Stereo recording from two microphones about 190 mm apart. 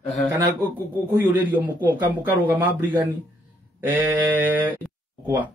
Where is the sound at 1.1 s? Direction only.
10° right (ahead or behind).